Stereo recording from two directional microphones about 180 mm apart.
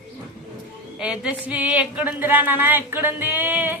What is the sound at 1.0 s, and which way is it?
Speech, 5° right (ahead or behind).